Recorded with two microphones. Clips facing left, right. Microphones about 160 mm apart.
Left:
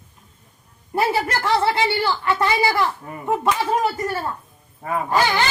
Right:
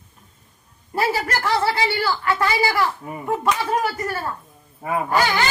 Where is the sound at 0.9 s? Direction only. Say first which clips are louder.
Left 1 dB; 20° left (ahead or behind).